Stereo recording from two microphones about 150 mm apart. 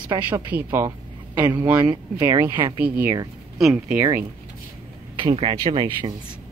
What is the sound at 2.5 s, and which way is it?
Speech, 10° right (ahead or behind).